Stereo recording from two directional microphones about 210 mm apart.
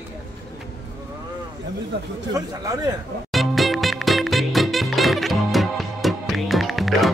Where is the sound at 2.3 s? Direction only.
15° right (ahead or behind).